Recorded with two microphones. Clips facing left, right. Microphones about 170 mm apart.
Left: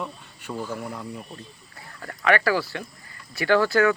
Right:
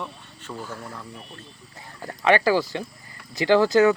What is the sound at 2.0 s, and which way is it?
Speech, 25° right (ahead or behind).